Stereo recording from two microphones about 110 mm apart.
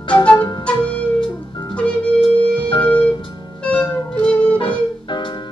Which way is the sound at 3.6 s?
10° left (ahead or behind).